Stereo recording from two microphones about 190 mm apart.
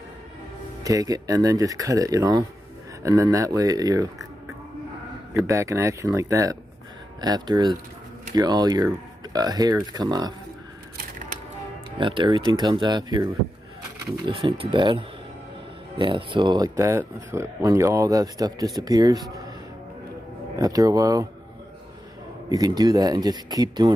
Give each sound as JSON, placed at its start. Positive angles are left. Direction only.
{"t": 0.8, "sound": "speech", "side_deg": -20}
{"t": 5.5, "sound": "speech", "side_deg": -15}
{"t": 12.0, "sound": "speech", "side_deg": -25}
{"t": 20.5, "sound": "speech", "side_deg": -20}
{"t": 22.5, "sound": "speech", "side_deg": -20}